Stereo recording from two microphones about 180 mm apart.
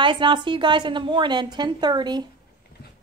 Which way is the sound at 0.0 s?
25° right (ahead or behind).